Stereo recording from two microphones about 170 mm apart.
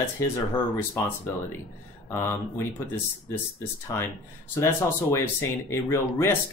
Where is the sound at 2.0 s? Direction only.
15° left (ahead or behind).